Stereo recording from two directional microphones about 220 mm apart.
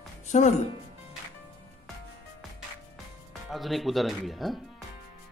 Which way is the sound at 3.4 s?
Centre (ahead or behind).